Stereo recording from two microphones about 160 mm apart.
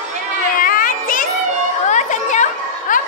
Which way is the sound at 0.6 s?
60° left (ahead or behind).